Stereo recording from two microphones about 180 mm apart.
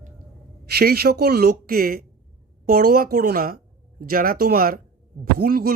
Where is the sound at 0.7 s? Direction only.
60° right (ahead or behind).